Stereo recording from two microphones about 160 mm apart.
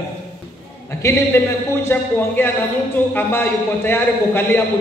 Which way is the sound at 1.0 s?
20° left (ahead or behind).